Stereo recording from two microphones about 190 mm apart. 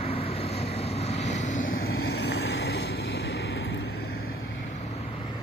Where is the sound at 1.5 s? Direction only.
70° left (ahead or behind).